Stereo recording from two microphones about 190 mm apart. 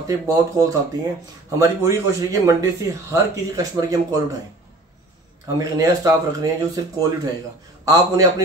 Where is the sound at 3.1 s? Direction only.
15° right (ahead or behind).